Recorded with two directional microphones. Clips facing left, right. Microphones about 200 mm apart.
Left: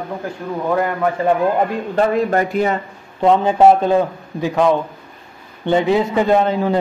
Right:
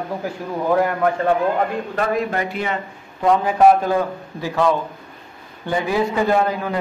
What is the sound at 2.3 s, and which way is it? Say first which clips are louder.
Speech: left 6 dB; 40° left (ahead or behind).